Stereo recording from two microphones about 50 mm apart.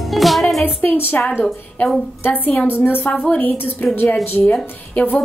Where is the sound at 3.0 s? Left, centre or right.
Left.